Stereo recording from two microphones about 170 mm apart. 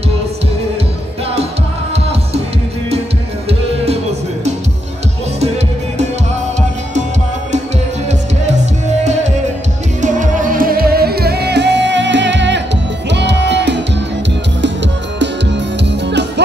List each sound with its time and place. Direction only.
3.4 s music: 35° right (ahead or behind)
10.0 s music: 50° right (ahead or behind); by 16.4 s 90° right